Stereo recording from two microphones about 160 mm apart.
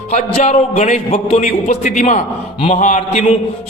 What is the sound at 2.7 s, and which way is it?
Speech, 50° left (ahead or behind).